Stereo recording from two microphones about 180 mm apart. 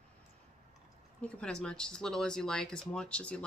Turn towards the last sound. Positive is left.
turn(degrees=5)  # may be behind; listen again after turning